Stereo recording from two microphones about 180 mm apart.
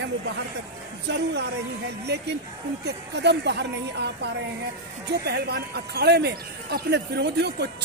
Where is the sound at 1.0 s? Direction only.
70° right (ahead or behind).